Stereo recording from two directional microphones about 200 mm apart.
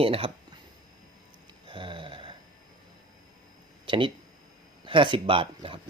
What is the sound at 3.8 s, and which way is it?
Speech, 25° right (ahead or behind).